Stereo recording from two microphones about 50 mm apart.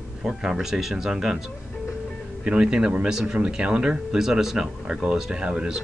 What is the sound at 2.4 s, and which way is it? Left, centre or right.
Speech, centre.